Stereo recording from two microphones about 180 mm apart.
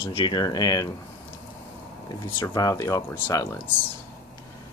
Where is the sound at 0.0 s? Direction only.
30° left (ahead or behind).